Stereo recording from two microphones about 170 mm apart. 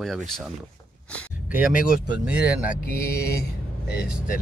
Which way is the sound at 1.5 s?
5° right (ahead or behind).